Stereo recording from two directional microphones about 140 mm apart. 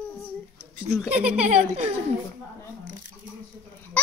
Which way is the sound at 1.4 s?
45° right (ahead or behind).